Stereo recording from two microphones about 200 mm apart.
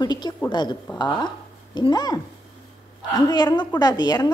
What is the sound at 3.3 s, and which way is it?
Speech, 20° left (ahead or behind).